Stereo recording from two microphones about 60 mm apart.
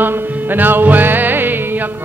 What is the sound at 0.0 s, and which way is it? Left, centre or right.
Music, right.